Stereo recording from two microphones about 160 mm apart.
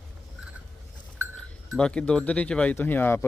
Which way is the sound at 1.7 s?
5° left (ahead or behind).